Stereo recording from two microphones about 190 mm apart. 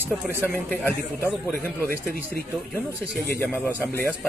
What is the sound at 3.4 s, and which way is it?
Speech, 10° left (ahead or behind).